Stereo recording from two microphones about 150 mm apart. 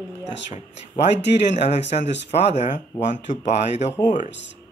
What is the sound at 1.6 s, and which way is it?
Speech, 50° left (ahead or behind).